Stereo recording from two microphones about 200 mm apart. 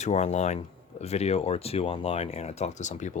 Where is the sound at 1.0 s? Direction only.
30° left (ahead or behind).